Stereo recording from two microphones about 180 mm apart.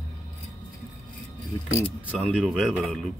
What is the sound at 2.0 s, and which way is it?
Speech, 5° right (ahead or behind).